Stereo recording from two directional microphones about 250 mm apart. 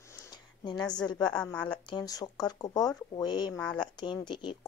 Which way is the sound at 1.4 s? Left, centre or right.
Centre.